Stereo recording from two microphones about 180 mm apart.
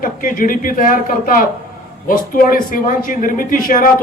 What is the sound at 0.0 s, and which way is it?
Speech, 50° left (ahead or behind).